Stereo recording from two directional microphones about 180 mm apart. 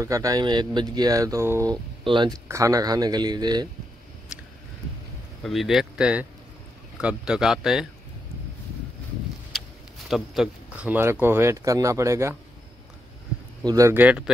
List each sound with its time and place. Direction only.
0.0 s speech: 20° right (ahead or behind)
5.4 s speech: centre (ahead or behind)
10.0 s speech: centre (ahead or behind)
13.7 s speech: 15° right (ahead or behind)